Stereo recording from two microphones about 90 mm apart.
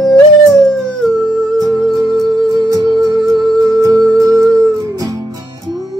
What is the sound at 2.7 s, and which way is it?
Music, 50° right (ahead or behind).